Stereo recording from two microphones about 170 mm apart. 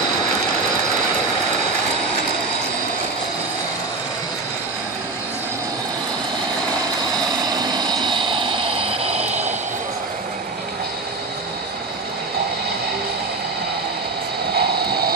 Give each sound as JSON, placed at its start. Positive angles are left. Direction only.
{"t": 7.4, "sound": "vehicle", "side_deg": -25}
{"t": 9.2, "sound": "a sound", "side_deg": -10}
{"t": 14.5, "sound": "vehicle", "side_deg": -65}